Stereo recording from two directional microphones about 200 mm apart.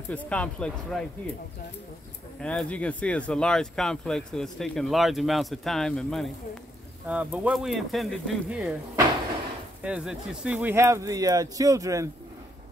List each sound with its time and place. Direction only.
0.1 s speech: 5° left (ahead or behind)
2.4 s speech: 5° left (ahead or behind)
9.8 s speech: 5° right (ahead or behind)